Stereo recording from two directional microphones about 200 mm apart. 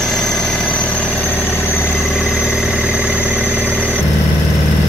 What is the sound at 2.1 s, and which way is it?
Vehicle, 5° right (ahead or behind).